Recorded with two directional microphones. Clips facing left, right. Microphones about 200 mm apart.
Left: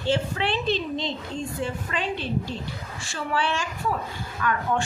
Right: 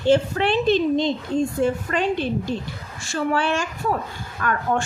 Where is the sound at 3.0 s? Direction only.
45° right (ahead or behind).